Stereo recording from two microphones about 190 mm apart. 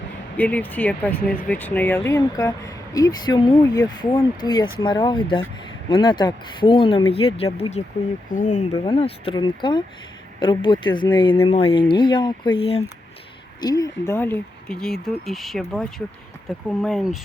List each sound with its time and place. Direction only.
0.3 s speech: 10° left (ahead or behind); by 8.6 s 40° left (ahead or behind)
8.9 s speech: 30° left (ahead or behind)
13.6 s speech: 20° left (ahead or behind); by 17.2 s centre (ahead or behind)